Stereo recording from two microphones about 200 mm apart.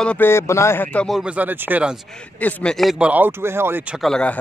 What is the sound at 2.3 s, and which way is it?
Speech, 5° left (ahead or behind).